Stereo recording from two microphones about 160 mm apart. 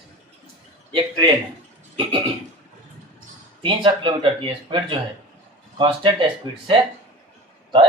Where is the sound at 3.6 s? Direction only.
30° right (ahead or behind).